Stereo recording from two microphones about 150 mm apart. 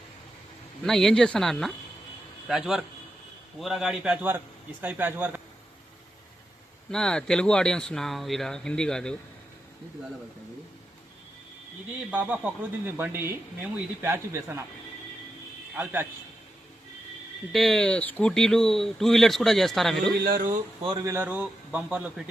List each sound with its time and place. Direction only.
0.9 s speech: centre (ahead or behind)
6.9 s speech: 5° left (ahead or behind)
12.1 s speech: 10° right (ahead or behind)
15.7 s a man's voice: 10° right (ahead or behind)
17.5 s speech: centre (ahead or behind)
20.2 s speech: 70° right (ahead or behind)
21.0 s speech: 15° right (ahead or behind)